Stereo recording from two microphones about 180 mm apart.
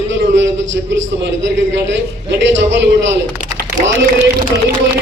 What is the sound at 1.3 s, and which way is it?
A man's voice, 80° right.